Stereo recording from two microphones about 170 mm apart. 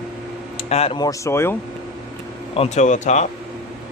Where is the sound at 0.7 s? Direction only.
35° left (ahead or behind).